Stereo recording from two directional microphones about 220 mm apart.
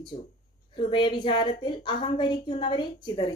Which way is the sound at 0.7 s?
20° left (ahead or behind).